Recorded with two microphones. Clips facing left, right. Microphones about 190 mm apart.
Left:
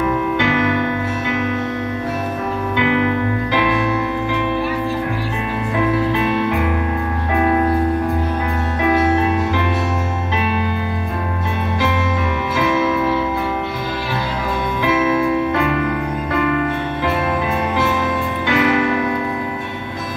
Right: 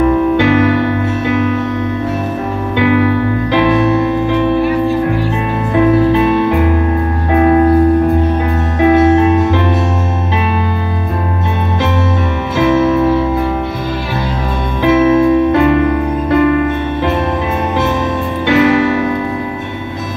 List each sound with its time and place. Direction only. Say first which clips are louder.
0.4 s music: right 7 dB; 35° right (ahead or behind)
2.8 s music: right 6 dB; 35° right (ahead or behind)
7.3 s music: right 7 dB; 35° right (ahead or behind)
8.8 s music: right 8 dB; 25° right (ahead or behind)
14.8 s music: right 9 dB; 30° right (ahead or behind)
18.5 s music: right 6 dB; 30° right (ahead or behind)